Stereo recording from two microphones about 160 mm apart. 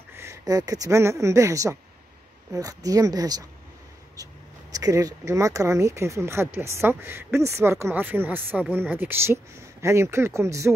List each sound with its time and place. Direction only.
0.1 s speech: 15° right (ahead or behind)
4.7 s speech: 20° right (ahead or behind)